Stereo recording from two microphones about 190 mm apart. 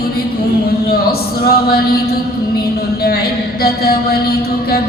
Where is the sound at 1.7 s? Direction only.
55° left (ahead or behind).